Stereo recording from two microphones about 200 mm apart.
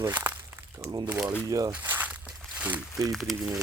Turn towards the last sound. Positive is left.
turn(degrees=0)  # may be behind; listen again after turning